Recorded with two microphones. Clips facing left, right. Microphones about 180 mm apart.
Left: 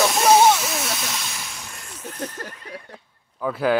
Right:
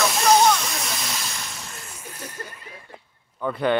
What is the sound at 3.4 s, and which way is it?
Speech, centre (ahead or behind).